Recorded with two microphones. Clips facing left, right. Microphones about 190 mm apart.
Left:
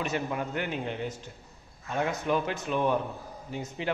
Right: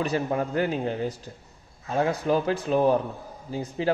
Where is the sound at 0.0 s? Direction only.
35° right (ahead or behind).